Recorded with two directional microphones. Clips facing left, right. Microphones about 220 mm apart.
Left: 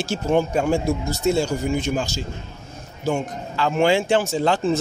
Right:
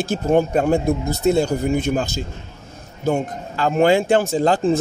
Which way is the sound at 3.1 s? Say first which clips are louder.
Right 2 dB; 40° right (ahead or behind).